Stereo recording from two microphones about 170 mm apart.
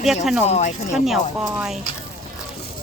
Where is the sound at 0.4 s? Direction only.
40° left (ahead or behind).